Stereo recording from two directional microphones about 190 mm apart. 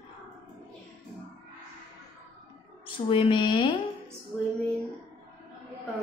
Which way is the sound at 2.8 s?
25° left (ahead or behind).